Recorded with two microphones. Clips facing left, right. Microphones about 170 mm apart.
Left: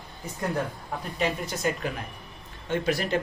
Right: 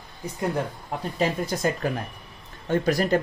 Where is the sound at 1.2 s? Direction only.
35° right (ahead or behind).